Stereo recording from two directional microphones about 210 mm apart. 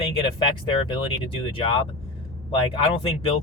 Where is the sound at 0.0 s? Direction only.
25° left (ahead or behind).